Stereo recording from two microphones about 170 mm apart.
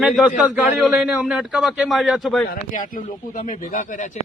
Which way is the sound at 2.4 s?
50° left (ahead or behind).